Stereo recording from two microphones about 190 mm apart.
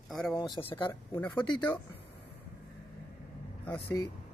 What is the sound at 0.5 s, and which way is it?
Speech, 25° left (ahead or behind).